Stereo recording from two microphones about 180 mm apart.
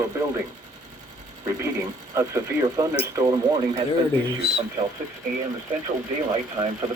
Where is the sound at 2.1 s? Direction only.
20° right (ahead or behind).